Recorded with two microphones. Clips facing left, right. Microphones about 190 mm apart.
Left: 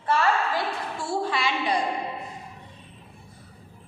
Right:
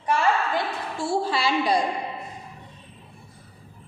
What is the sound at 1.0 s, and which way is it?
Speech, 30° right (ahead or behind).